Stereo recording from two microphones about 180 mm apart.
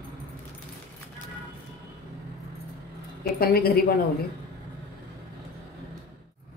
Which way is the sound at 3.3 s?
55° left (ahead or behind).